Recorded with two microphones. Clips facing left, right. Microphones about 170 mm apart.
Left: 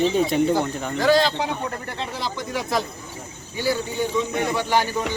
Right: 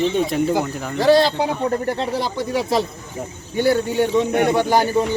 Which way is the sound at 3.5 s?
60° right (ahead or behind).